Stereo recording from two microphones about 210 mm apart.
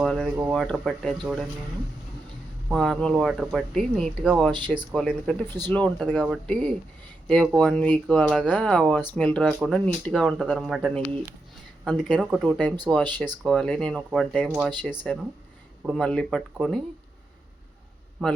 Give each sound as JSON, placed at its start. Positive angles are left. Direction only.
{"t": 0.0, "sound": "speech", "side_deg": -5}
{"t": 2.6, "sound": "speech", "side_deg": 0}
{"t": 4.5, "sound": "speech", "side_deg": -20}
{"t": 4.9, "sound": "speech", "side_deg": 0}